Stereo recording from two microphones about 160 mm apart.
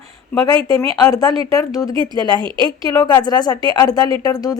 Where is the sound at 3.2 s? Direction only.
25° left (ahead or behind).